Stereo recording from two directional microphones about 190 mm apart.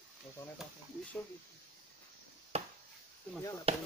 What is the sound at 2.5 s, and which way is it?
Chop, 35° right (ahead or behind).